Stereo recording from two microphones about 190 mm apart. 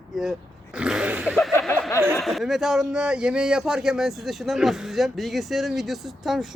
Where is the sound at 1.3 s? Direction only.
5° left (ahead or behind).